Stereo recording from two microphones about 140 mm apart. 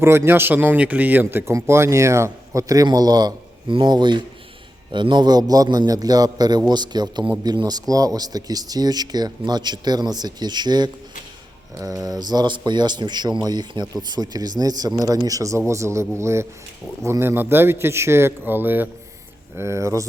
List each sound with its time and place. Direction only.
0.0 s a man's voice: 15° right (ahead or behind)